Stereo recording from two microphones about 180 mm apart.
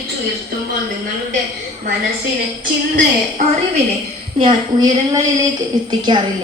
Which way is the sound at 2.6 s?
45° right (ahead or behind).